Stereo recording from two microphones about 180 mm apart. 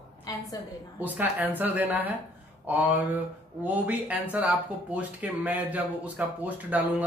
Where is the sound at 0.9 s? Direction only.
10° right (ahead or behind).